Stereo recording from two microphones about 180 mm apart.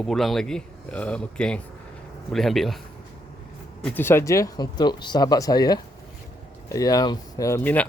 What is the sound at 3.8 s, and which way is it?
Speech, 10° left (ahead or behind).